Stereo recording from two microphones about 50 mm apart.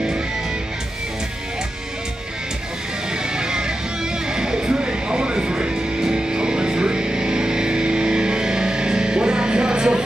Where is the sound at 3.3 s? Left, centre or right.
Centre.